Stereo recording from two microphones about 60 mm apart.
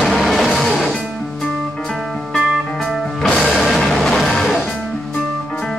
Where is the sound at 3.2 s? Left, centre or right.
Centre.